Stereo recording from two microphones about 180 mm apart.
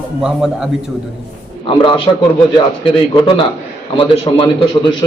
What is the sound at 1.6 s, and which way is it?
Speech, 30° left (ahead or behind).